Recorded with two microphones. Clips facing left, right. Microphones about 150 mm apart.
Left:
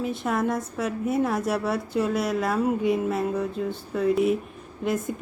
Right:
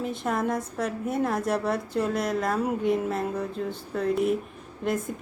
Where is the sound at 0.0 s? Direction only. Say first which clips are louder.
Left 2 dB; centre (ahead or behind).